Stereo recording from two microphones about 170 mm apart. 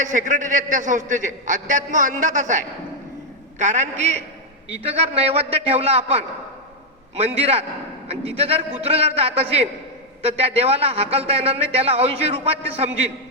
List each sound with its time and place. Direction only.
0.0 s a man's voice: 50° right (ahead or behind)